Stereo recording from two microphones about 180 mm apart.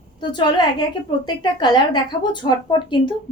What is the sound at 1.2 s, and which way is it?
A woman's voice, 25° left (ahead or behind).